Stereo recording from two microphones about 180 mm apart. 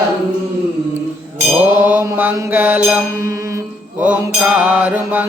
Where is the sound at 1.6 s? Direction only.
10° right (ahead or behind).